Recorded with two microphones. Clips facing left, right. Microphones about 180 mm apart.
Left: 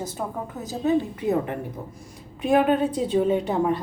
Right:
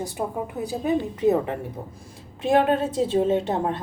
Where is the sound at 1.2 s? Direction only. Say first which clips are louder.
Right 3 dB; 25° right (ahead or behind).